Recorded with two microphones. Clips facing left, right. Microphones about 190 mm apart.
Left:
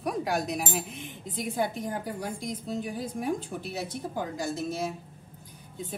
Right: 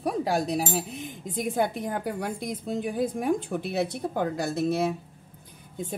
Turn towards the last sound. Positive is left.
turn(degrees=-65)  # may be behind; listen again after turning